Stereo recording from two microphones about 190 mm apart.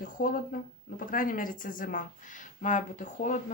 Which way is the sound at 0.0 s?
45° left (ahead or behind).